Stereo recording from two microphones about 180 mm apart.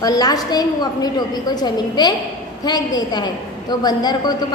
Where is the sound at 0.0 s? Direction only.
20° left (ahead or behind).